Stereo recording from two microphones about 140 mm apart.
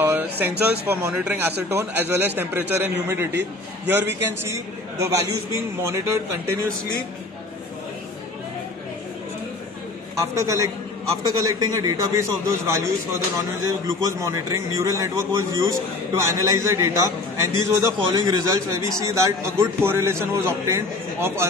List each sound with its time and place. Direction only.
0.0 s a man's voice: 15° right (ahead or behind)
10.1 s a man's voice: 20° right (ahead or behind)